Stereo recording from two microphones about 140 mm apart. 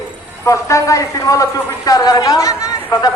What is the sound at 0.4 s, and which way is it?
A man's voice, 20° left (ahead or behind).